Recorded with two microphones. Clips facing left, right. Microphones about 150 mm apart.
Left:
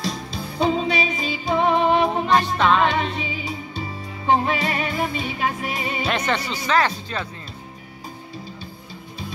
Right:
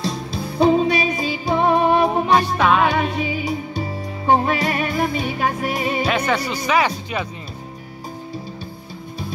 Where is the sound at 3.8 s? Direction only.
40° right (ahead or behind).